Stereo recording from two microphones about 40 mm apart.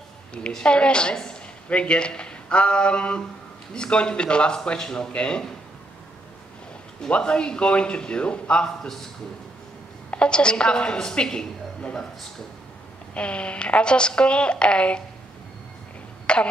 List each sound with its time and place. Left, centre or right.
0.7 s a woman's voice: left
7.1 s a woman's voice: left
8.6 s speech: centre
10.1 s a woman's voice: left
13.1 s a woman's voice: left
16.3 s cough: left